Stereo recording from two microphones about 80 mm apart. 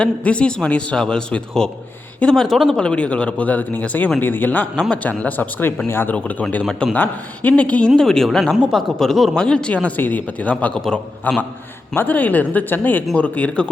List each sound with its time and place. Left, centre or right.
0.0 s a man's voice: centre; by 6.1 s left
6.1 s a man's voice: centre
10.8 s speech: centre
11.9 s a man's voice: left